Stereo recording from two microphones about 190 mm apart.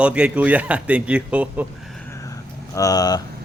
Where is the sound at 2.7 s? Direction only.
20° left (ahead or behind).